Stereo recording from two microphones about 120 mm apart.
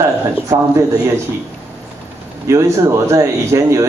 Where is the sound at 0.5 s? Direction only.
25° right (ahead or behind).